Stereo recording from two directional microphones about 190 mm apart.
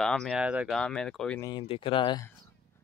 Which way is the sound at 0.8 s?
5° left (ahead or behind).